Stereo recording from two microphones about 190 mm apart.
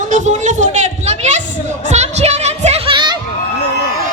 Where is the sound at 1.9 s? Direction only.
35° right (ahead or behind).